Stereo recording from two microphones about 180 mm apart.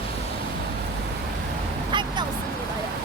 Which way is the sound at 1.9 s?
25° right (ahead or behind).